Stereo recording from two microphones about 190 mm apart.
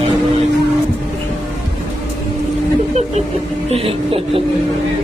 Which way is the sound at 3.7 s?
30° right (ahead or behind).